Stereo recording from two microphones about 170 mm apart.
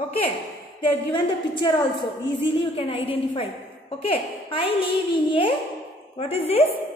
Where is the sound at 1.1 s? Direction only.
30° left (ahead or behind).